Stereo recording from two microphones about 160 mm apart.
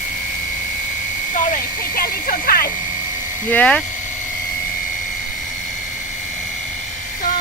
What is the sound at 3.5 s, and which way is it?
Speech, 10° left (ahead or behind).